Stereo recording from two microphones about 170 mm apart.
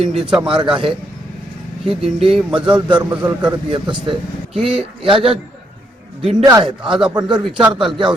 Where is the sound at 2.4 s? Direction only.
5° right (ahead or behind).